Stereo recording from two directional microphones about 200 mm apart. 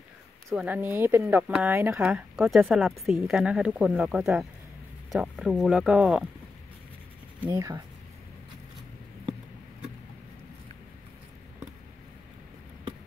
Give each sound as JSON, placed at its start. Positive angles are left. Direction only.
{"t": 0.5, "sound": "speech", "side_deg": -5}
{"t": 7.4, "sound": "speech", "side_deg": -20}